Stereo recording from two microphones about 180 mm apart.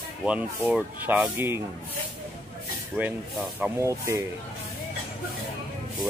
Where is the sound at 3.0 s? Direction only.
10° right (ahead or behind).